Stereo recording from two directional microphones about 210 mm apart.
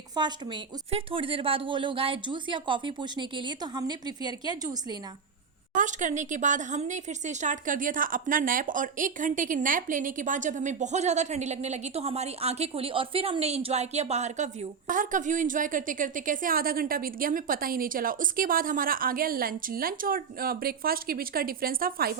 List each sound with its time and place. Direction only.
0.2 s a woman's voice: 20° right (ahead or behind)
5.7 s speech: 35° right (ahead or behind)